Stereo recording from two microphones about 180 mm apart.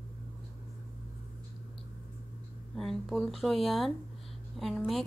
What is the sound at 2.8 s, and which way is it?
Speech, centre (ahead or behind).